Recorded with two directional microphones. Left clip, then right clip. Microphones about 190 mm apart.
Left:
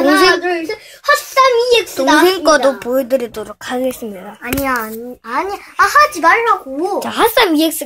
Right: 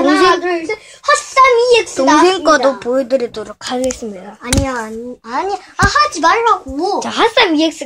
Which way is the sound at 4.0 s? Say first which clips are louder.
Right 1 dB; 10° left (ahead or behind).